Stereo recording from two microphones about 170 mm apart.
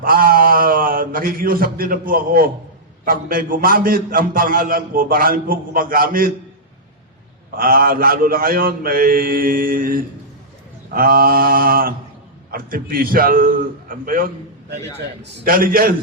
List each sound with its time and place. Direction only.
0.0 s a sound: 60° right (ahead or behind)
3.0 s a man's voice: 55° right (ahead or behind)
7.5 s a man's voice: 60° right (ahead or behind)